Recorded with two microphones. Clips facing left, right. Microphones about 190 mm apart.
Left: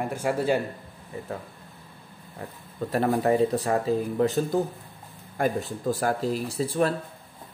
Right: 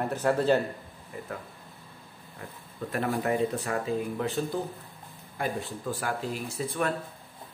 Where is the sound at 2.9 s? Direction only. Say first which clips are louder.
Left 5 dB; 35° left (ahead or behind).